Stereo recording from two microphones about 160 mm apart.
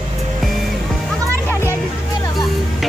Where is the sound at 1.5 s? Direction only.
15° left (ahead or behind).